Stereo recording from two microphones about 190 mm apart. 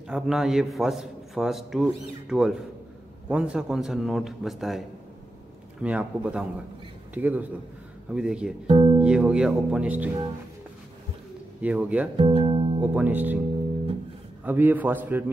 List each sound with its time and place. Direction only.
0.1 s a man's voice: 5° right (ahead or behind)
8.6 s speech: 30° right (ahead or behind)
9.0 s a man's voice: 5° right (ahead or behind)
11.6 s a man's voice: 5° right (ahead or behind)
12.2 s speech: 30° right (ahead or behind)
12.8 s a man's voice: 10° right (ahead or behind)
14.4 s a man's voice: 10° right (ahead or behind)